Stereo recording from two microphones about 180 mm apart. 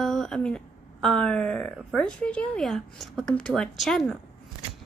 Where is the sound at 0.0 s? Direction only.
Centre (ahead or behind).